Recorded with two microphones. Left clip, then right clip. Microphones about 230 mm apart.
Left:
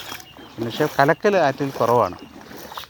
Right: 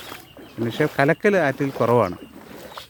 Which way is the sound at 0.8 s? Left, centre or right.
Right.